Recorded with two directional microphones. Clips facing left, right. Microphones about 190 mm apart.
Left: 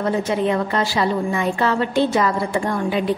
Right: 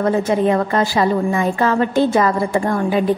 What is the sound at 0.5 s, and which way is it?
A woman's voice, 45° right (ahead or behind).